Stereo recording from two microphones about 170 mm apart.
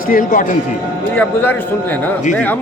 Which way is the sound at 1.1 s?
10° left (ahead or behind).